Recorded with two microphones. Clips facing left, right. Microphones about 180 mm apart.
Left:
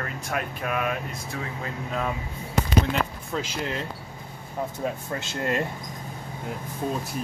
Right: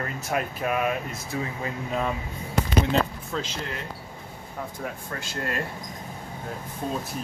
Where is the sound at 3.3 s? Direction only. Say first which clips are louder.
Left 1 dB; 5° left (ahead or behind).